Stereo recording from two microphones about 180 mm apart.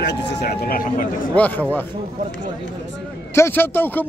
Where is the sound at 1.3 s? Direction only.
10° left (ahead or behind).